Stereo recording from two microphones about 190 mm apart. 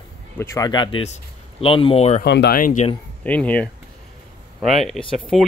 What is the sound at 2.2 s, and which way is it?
Speech, 60° left (ahead or behind).